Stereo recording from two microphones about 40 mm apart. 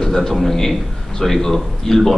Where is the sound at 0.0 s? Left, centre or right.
Centre.